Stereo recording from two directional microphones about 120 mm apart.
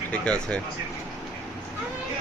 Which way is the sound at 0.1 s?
10° left (ahead or behind).